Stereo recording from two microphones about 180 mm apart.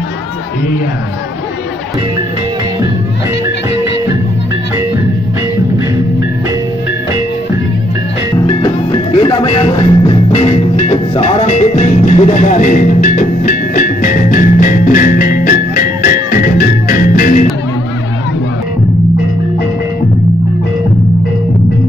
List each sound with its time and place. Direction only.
8.6 s music: 30° left (ahead or behind); by 17.5 s 50° left (ahead or behind)